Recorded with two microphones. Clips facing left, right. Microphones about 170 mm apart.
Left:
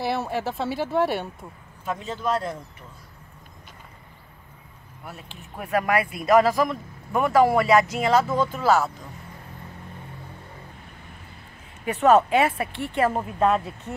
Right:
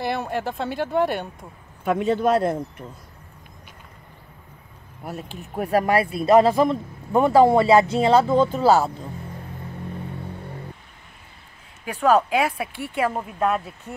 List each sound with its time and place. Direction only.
0.0 s speech: centre (ahead or behind)
1.9 s a man's voice: 60° right (ahead or behind)
5.0 s speech: 40° right (ahead or behind)
11.8 s speech: 5° left (ahead or behind)